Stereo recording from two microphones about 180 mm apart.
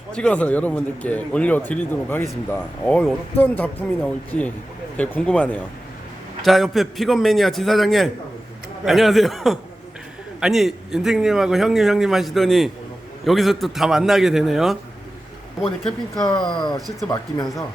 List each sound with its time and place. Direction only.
0.1 s a man's voice: 5° left (ahead or behind)
15.8 s a man's voice: 5° left (ahead or behind)
16.5 s speech: 25° left (ahead or behind)